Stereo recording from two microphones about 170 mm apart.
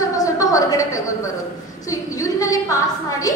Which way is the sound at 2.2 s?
20° left (ahead or behind).